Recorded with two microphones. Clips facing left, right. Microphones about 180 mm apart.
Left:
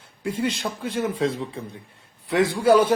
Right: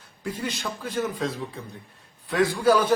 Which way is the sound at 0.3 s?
25° left (ahead or behind).